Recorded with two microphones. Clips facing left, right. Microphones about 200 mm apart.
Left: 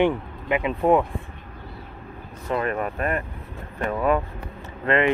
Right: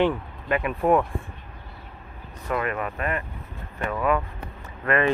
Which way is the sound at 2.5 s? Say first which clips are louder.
Left 2 dB; 35° left (ahead or behind).